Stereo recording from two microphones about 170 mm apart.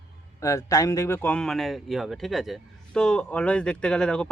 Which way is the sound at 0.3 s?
20° left (ahead or behind).